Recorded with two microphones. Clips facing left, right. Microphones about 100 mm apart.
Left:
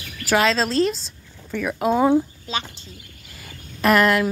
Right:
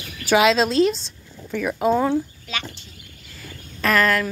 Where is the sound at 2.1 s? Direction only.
30° left (ahead or behind).